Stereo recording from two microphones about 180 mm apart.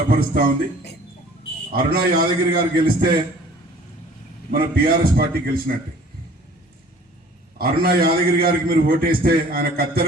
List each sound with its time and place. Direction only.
0.1 s a man's voice: 55° right (ahead or behind)
1.7 s a man's voice: 55° right (ahead or behind)
4.8 s a man's voice: 55° right (ahead or behind)
7.6 s a man's voice: 60° right (ahead or behind)